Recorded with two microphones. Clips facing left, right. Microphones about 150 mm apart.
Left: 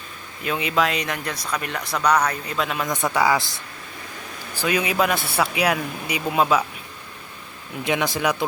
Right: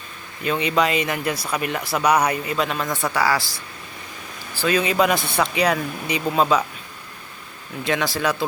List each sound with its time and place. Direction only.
0.4 s speech: centre (ahead or behind)
3.2 s speech: 20° left (ahead or behind)
7.9 s speech: 15° left (ahead or behind)